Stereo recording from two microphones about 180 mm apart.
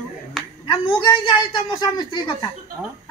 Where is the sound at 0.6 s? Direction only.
25° left (ahead or behind).